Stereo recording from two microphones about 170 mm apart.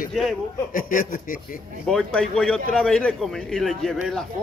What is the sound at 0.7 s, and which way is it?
Speech, 55° left (ahead or behind).